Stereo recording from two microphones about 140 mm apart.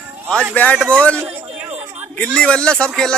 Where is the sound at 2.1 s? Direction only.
10° left (ahead or behind).